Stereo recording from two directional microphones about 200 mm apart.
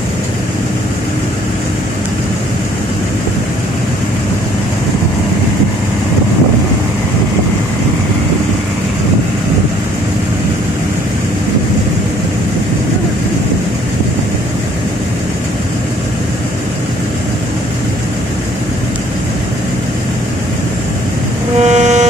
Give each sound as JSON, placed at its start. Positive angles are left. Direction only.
{"t": 21.6, "sound": "vehicle", "side_deg": -35}